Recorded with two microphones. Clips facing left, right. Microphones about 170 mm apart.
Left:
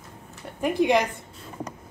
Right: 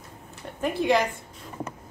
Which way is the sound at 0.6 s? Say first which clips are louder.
Left 2 dB; 15° left (ahead or behind).